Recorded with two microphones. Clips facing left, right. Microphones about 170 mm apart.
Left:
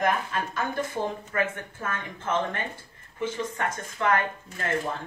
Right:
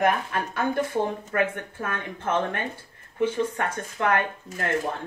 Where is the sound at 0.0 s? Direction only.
55° right (ahead or behind).